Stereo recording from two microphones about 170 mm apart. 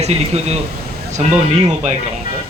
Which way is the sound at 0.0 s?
40° right (ahead or behind).